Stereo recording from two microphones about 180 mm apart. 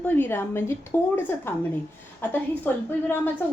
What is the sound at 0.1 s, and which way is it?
A woman's voice, 10° left (ahead or behind).